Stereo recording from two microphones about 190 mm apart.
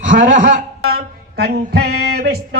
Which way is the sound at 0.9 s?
55° right (ahead or behind).